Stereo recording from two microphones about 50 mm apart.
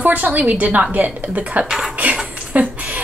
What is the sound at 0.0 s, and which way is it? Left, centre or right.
A woman's voice, right.